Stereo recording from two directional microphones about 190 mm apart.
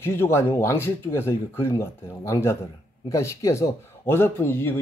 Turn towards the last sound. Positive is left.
turn(degrees=10)  # may be behind; listen again after turning